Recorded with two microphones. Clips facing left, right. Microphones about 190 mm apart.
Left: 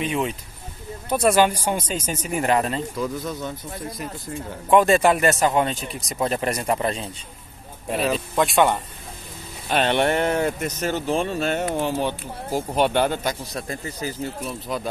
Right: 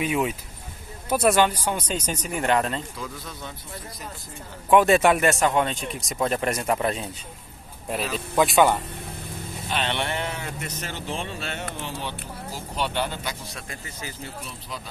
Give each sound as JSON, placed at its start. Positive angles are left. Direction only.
{"t": 0.0, "sound": "speech", "side_deg": -5}
{"t": 1.3, "sound": "speech", "side_deg": 10}
{"t": 4.6, "sound": "speech", "side_deg": 0}
{"t": 8.4, "sound": "speech", "side_deg": 0}
{"t": 9.7, "sound": "speech", "side_deg": 45}
{"t": 14.7, "sound": "speech", "side_deg": 50}